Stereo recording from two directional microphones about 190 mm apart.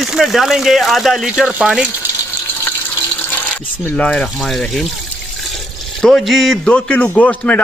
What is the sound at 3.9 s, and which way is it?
Speech, 5° left (ahead or behind).